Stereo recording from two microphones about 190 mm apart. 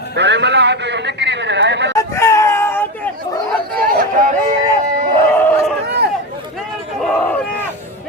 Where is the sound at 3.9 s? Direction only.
45° right (ahead or behind).